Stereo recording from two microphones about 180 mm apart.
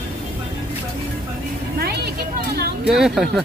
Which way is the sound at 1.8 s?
65° right (ahead or behind).